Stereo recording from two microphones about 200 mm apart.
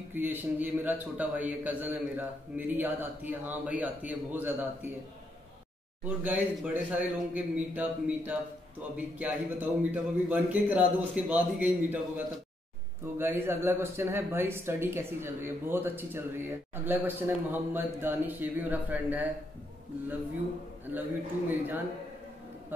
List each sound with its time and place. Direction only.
0.1 s speech: 10° right (ahead or behind)
6.0 s speech: 10° right (ahead or behind)
13.0 s speech: 10° right (ahead or behind)
20.9 s speech: 10° right (ahead or behind)